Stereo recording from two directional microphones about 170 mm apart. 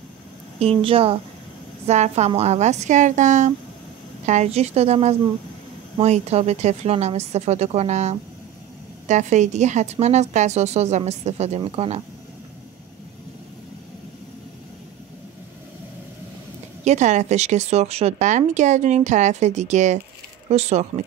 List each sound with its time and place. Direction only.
0.6 s a woman's voice: 35° right (ahead or behind)
16.8 s a woman's voice: 45° right (ahead or behind)